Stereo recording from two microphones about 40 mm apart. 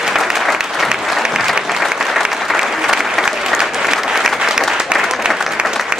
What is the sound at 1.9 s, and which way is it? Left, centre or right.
Applause, centre.